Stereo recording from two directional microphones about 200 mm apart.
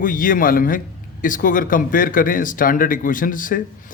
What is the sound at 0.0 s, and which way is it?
Speech, 45° left (ahead or behind).